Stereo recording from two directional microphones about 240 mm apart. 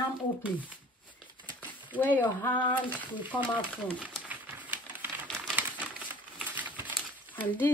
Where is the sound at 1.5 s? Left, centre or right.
Centre.